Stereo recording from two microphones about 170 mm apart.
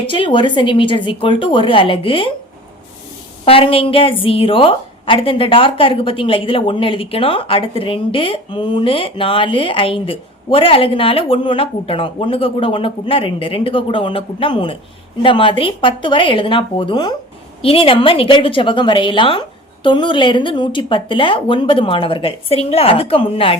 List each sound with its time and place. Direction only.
0.1 s a woman's voice: 30° left (ahead or behind)
3.4 s a woman's voice: 35° left (ahead or behind)